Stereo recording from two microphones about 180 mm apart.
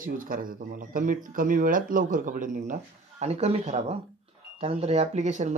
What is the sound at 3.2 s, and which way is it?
A man's voice, 35° right (ahead or behind).